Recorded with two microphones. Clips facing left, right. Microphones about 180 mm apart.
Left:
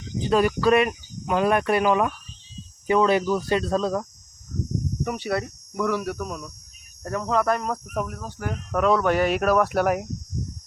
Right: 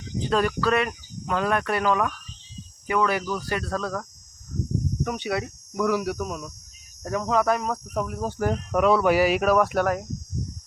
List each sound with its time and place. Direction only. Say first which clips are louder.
0.3 s speech: left 4 dB; 10° left (ahead or behind)
5.0 s speech: left 3 dB; 5° left (ahead or behind)
8.2 s speech: right 7 dB; 40° right (ahead or behind)
8.7 s speech: even; 5° right (ahead or behind)
9.8 s speech: left 2 dB; 15° left (ahead or behind)